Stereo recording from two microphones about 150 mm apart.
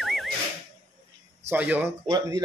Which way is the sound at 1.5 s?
10° right (ahead or behind).